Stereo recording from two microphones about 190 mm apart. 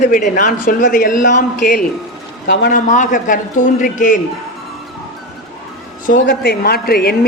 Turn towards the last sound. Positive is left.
turn(degrees=55)  # may be behind; listen again after turning